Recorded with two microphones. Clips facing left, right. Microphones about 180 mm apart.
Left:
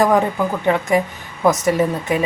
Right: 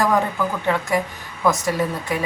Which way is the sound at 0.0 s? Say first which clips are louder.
Left 4 dB; 20° left (ahead or behind).